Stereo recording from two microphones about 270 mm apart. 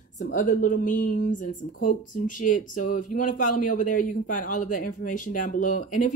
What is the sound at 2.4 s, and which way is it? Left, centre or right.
Speech, left.